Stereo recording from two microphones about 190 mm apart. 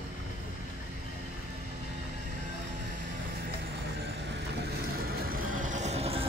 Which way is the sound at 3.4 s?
60° right (ahead or behind).